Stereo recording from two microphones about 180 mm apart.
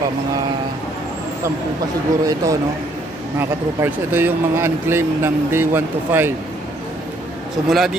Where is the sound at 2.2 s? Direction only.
20° right (ahead or behind).